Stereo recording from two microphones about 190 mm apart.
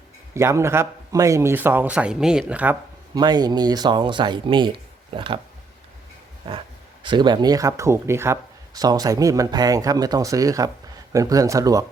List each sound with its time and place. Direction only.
0.3 s a man's voice: 15° right (ahead or behind)
3.2 s speech: 20° right (ahead or behind)
7.0 s a man's voice: 25° right (ahead or behind)